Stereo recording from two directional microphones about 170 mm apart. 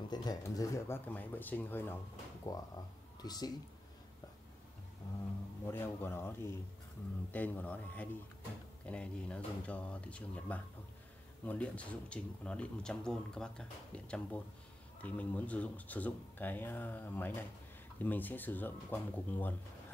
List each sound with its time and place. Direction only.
0.1 s speech: 25° left (ahead or behind)
5.7 s speech: 15° left (ahead or behind)